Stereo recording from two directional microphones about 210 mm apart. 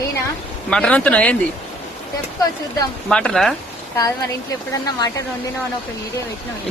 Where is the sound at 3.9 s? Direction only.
15° left (ahead or behind).